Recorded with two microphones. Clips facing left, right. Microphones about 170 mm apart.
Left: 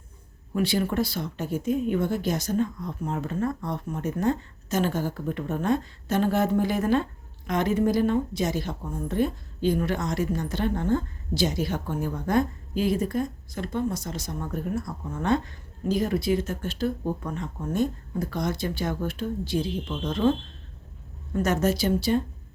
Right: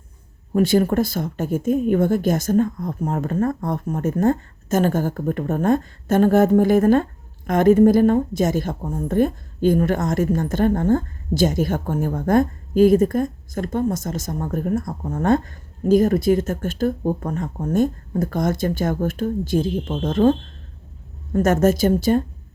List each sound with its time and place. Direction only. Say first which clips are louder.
0.5 s speech: right 8 dB; 45° right (ahead or behind)
21.3 s speech: right 7 dB; 50° right (ahead or behind)